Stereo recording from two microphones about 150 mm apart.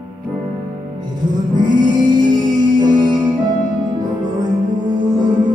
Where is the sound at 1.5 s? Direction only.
30° right (ahead or behind).